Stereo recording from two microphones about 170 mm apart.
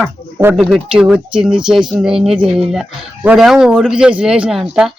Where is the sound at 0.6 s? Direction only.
Centre (ahead or behind).